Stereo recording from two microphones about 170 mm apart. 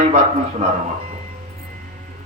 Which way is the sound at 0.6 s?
40° right (ahead or behind).